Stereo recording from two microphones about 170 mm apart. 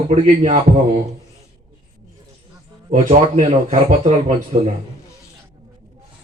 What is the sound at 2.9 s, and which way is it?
A man's voice, 40° right (ahead or behind).